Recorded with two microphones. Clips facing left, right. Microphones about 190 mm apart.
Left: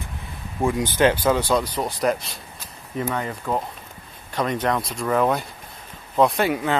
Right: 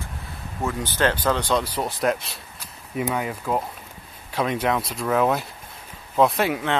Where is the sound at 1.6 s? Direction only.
5° right (ahead or behind).